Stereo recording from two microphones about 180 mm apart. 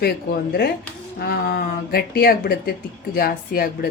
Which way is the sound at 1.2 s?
60° left (ahead or behind).